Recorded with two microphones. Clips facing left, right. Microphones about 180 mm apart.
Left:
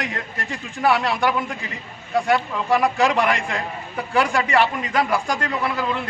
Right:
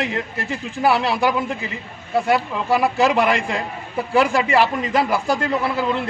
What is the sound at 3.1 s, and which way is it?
Speech, 30° right (ahead or behind).